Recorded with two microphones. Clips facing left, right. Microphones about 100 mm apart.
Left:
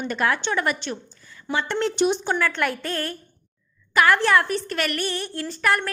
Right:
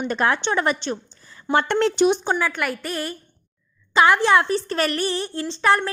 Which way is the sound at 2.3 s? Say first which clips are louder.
Even; 10° right (ahead or behind).